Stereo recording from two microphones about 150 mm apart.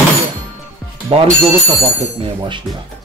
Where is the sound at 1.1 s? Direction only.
40° right (ahead or behind).